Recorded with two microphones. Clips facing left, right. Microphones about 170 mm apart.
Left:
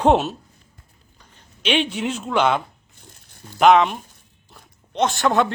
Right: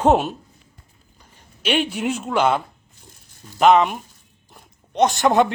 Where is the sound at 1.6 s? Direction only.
10° right (ahead or behind).